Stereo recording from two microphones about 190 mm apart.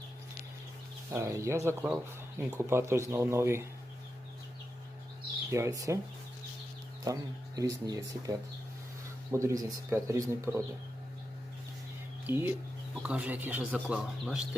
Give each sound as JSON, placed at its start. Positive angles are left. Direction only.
{"t": 1.1, "sound": "speech", "side_deg": -15}
{"t": 5.5, "sound": "speech", "side_deg": -15}
{"t": 7.0, "sound": "speech", "side_deg": -20}
{"t": 12.2, "sound": "speech", "side_deg": -10}